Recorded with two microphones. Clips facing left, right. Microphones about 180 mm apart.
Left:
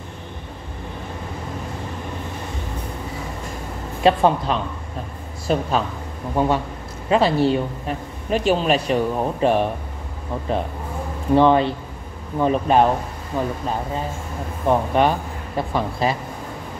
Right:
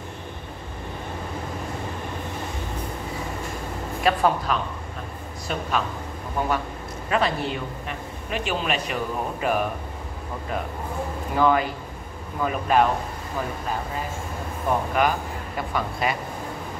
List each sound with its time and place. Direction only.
4.0 s speech: 25° left (ahead or behind)
11.3 s speech: 30° left (ahead or behind)
13.3 s speech: 20° left (ahead or behind)
14.7 s a man's voice: 25° left (ahead or behind)